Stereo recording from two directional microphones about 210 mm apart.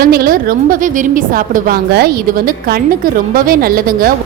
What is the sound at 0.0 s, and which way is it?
A woman's voice, 45° right (ahead or behind).